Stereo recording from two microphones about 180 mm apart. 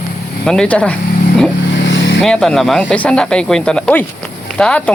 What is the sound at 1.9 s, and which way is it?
Vehicle, 85° left.